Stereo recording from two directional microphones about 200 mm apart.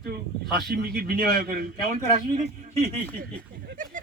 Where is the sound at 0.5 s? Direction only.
50° right (ahead or behind).